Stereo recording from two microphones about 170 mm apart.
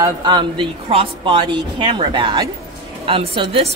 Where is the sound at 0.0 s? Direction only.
25° right (ahead or behind).